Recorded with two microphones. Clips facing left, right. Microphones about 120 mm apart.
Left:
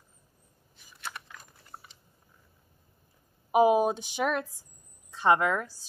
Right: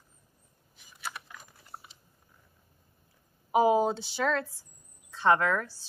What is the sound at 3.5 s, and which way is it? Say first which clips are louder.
A woman's voice: left 2 dB; 15° left (ahead or behind).